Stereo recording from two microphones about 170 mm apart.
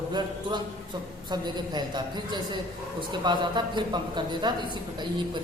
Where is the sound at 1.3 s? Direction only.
25° right (ahead or behind).